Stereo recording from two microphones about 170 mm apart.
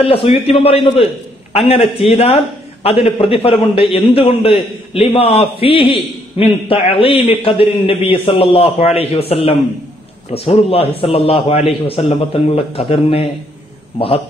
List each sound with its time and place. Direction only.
0.0 s a man's voice: 35° left (ahead or behind)